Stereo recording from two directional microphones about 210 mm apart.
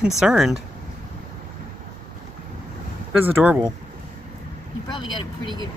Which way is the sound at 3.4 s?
5° right (ahead or behind).